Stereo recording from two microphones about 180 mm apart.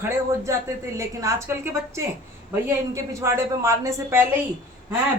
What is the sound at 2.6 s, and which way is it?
A man's voice, 15° right (ahead or behind).